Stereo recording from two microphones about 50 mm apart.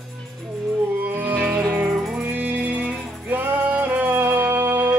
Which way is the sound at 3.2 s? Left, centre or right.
Right.